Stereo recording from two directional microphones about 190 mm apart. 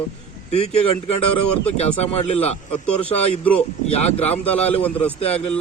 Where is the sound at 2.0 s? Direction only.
35° left (ahead or behind).